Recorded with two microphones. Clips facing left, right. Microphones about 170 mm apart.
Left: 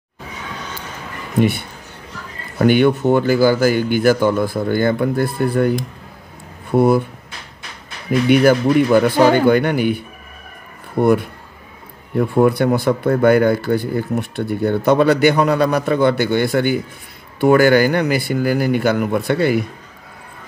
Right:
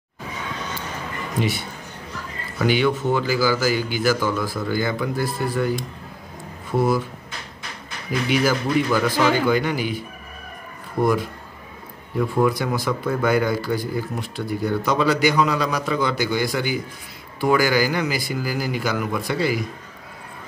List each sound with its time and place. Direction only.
1.4 s speech: 55° left (ahead or behind)
8.3 s speech: 60° left (ahead or behind)
12.2 s speech: 55° left (ahead or behind)